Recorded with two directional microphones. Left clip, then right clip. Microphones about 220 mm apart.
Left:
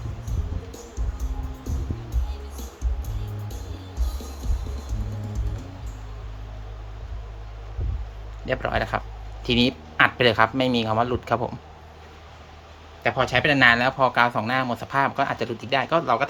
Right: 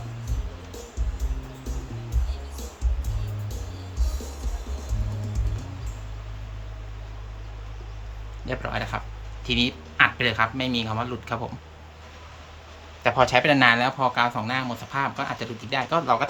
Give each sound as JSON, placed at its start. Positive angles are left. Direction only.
{"t": 8.4, "sound": "a man's voice", "side_deg": 15}
{"t": 13.0, "sound": "speech", "side_deg": 0}